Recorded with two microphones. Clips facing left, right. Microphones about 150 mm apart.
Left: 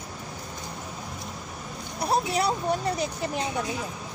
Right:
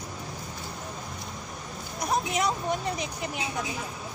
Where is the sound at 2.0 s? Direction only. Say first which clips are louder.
Left 3 dB; 30° left (ahead or behind).